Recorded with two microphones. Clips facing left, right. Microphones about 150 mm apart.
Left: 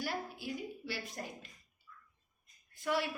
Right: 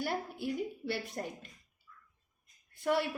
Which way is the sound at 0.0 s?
55° right (ahead or behind).